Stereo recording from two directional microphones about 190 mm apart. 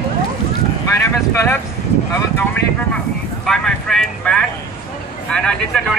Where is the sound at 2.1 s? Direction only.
10° left (ahead or behind).